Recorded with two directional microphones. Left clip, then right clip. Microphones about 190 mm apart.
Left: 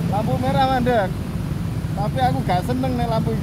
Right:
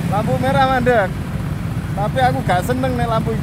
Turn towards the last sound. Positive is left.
turn(degrees=25)  # may be behind; listen again after turning